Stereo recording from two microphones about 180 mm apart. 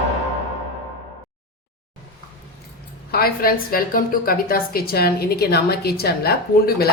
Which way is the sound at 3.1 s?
55° left (ahead or behind).